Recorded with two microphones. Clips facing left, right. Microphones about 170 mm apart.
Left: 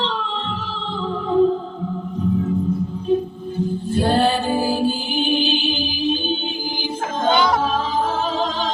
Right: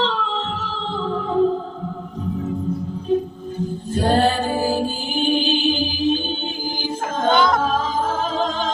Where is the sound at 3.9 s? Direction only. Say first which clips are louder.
Even; 40° right (ahead or behind).